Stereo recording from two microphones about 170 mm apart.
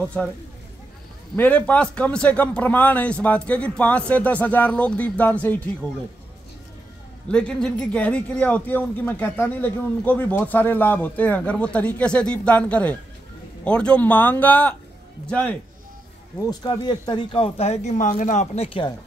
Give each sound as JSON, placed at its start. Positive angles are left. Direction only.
{"t": 0.0, "sound": "speech", "side_deg": 5}
{"t": 1.3, "sound": "speech", "side_deg": 10}
{"t": 7.2, "sound": "speech", "side_deg": 5}
{"t": 16.4, "sound": "speech", "side_deg": 25}